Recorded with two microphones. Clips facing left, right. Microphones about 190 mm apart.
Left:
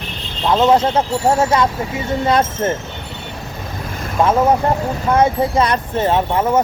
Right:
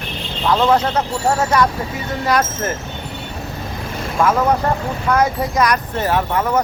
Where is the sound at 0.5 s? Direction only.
25° left (ahead or behind).